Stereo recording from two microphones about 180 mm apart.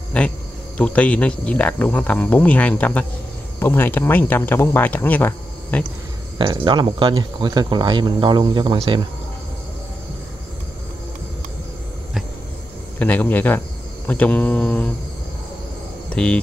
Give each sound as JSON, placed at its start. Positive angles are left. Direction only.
{"t": 0.2, "sound": "speech", "side_deg": 5}
{"t": 6.3, "sound": "speech", "side_deg": -25}
{"t": 13.0, "sound": "speech", "side_deg": 10}
{"t": 16.1, "sound": "speech", "side_deg": 5}